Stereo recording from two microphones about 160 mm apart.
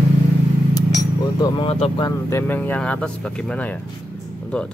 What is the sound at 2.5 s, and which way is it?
Speech, 10° left (ahead or behind).